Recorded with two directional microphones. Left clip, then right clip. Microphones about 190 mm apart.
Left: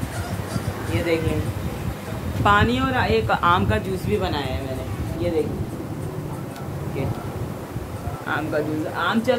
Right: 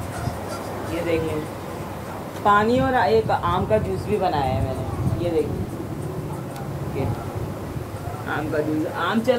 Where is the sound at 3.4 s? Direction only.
40° left (ahead or behind).